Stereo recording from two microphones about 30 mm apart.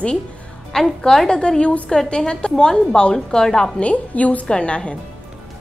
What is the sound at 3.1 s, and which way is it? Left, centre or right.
Speech, left.